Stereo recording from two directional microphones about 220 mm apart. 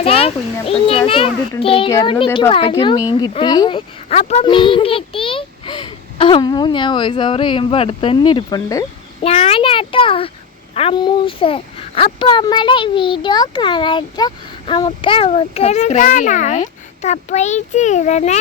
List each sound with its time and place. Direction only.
0.0 s a child's voice: 25° left (ahead or behind)